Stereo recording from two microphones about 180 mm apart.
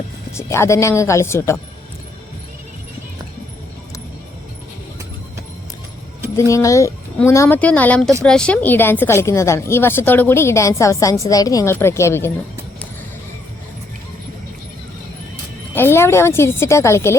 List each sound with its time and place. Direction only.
0.3 s speech: 15° left (ahead or behind)
6.3 s speech: 15° left (ahead or behind)
15.7 s speech: 10° left (ahead or behind)